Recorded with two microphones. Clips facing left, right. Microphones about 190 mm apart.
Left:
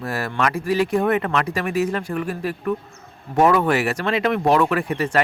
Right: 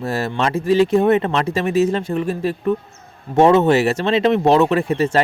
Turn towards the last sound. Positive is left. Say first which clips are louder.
# right 4 dB
turn(degrees=-25)  # may be behind; listen again after turning